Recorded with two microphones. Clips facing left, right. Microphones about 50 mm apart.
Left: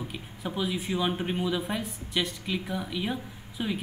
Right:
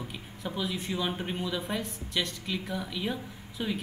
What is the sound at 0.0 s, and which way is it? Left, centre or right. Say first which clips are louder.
A woman's voice: left 2 dB; centre.